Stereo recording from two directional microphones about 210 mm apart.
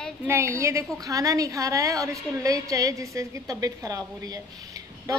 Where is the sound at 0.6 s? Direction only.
15° right (ahead or behind).